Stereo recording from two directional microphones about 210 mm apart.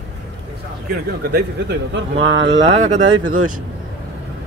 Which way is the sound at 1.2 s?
50° right (ahead or behind).